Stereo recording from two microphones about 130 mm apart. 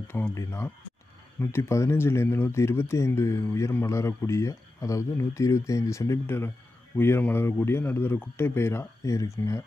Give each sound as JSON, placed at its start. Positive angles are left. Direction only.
{"t": 0.1, "sound": "speech", "side_deg": 20}